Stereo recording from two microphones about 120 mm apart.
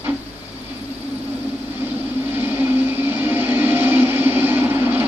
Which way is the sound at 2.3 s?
15° right (ahead or behind).